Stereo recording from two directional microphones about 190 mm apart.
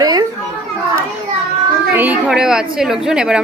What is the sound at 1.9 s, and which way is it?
A woman's voice, 10° right (ahead or behind).